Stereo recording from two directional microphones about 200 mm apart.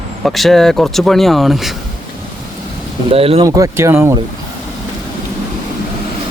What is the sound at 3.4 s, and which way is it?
Speech, 15° right (ahead or behind).